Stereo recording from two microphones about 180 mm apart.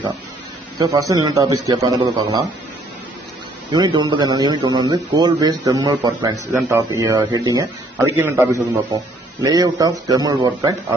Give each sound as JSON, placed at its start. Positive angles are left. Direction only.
{"t": 0.7, "sound": "speech", "side_deg": -20}
{"t": 3.7, "sound": "speech", "side_deg": -25}